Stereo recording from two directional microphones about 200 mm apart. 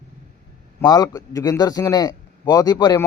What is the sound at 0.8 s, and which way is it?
A man's voice, 20° left (ahead or behind).